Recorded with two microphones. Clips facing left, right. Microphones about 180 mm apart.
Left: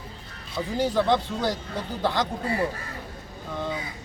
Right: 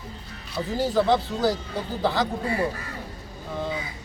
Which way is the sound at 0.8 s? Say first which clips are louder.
Right 1 dB; 5° right (ahead or behind).